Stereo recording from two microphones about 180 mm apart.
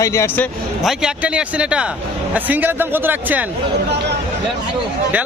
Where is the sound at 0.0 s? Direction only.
15° left (ahead or behind).